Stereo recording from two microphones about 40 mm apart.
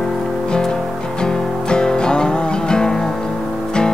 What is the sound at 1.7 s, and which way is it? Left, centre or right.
Music, left.